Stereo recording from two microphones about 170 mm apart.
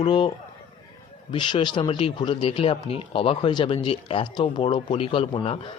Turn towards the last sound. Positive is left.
turn(degrees=35)  # may be behind; listen again after turning